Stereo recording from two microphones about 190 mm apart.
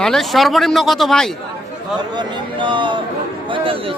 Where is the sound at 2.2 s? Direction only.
25° right (ahead or behind).